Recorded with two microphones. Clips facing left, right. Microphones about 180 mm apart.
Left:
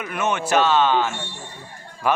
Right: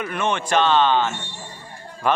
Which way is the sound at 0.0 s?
5° left (ahead or behind).